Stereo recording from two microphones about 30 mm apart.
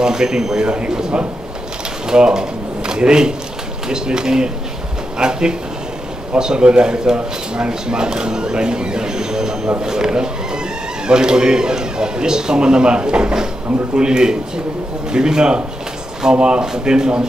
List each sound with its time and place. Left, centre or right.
0.0 s speech: right